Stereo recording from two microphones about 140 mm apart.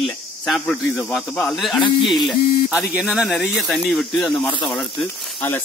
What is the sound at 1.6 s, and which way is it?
Speech, centre (ahead or behind).